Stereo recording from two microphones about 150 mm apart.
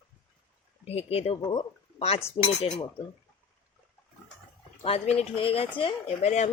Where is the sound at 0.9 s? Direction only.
40° left (ahead or behind).